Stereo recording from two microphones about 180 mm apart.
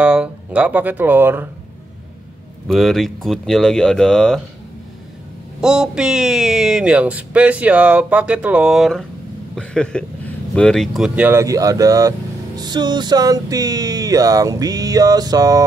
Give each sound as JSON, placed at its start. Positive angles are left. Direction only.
{"t": 0.0, "sound": "speech", "side_deg": -5}
{"t": 2.7, "sound": "speech", "side_deg": 0}
{"t": 5.6, "sound": "speech", "side_deg": -5}
{"t": 12.5, "sound": "music", "side_deg": -25}